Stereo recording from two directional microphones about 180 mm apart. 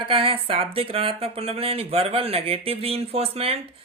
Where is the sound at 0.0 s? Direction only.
30° right (ahead or behind).